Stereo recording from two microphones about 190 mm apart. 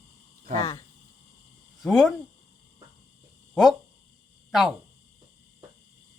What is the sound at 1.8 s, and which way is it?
Speech, centre (ahead or behind).